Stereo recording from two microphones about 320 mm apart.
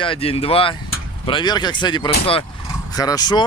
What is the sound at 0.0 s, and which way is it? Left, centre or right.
Speech, centre.